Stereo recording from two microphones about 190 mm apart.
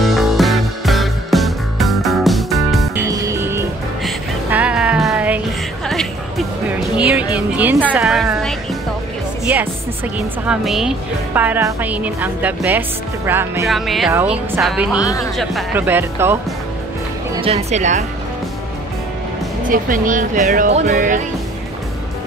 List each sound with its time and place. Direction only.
0.0 s music: centre (ahead or behind)
3.1 s music: 15° right (ahead or behind)
9.5 s music: 10° right (ahead or behind)
10.1 s a woman's voice: 5° right (ahead or behind)
13.7 s speech: centre (ahead or behind)
15.0 s speech: 20° left (ahead or behind)
15.3 s a woman's voice: 5° right (ahead or behind)
17.4 s speech: 35° right (ahead or behind)
19.6 s speech: 45° right (ahead or behind)